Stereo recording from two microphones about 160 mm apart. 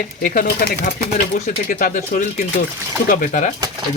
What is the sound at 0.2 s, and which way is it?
Speech, 65° left (ahead or behind).